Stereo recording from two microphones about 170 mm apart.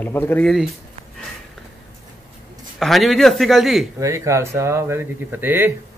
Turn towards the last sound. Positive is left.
turn(degrees=-10)  # may be behind; listen again after turning